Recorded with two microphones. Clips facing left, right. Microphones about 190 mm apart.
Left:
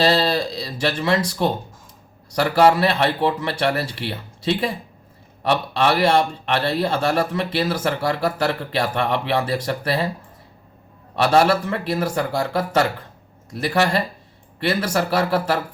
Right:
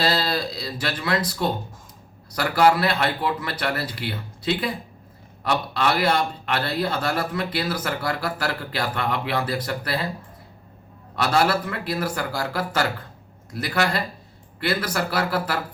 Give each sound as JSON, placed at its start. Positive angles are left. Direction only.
{"t": 0.0, "sound": "a man's voice", "side_deg": 25}
{"t": 11.1, "sound": "a man's voice", "side_deg": 25}